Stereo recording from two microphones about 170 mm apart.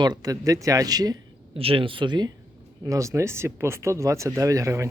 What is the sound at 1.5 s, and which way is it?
Speech, 35° right (ahead or behind).